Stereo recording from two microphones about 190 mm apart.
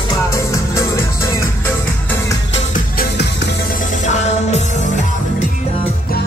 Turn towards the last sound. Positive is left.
turn(degrees=40)  # may be behind; listen again after turning